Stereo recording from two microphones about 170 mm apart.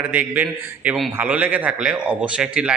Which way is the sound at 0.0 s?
10° right (ahead or behind).